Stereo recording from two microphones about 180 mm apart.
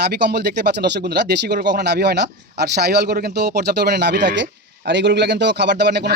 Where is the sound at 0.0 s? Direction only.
65° right (ahead or behind).